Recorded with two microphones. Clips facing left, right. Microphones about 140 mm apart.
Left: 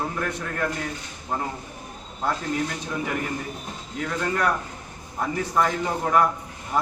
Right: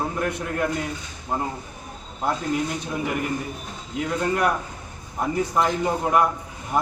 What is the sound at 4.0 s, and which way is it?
Speech, 15° right (ahead or behind).